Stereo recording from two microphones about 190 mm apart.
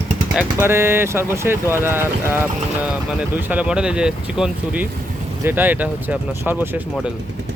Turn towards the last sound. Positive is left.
turn(degrees=-10)  # may be behind; listen again after turning